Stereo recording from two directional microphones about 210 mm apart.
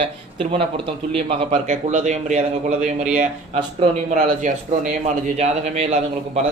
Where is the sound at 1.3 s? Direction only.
35° right (ahead or behind).